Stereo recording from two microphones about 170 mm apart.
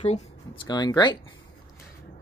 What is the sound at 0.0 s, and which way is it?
Speech, 40° left (ahead or behind).